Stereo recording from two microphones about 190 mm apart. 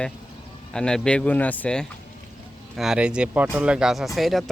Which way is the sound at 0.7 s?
5° left (ahead or behind).